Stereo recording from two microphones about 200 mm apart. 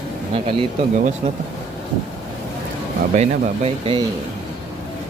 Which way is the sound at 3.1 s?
35° right (ahead or behind).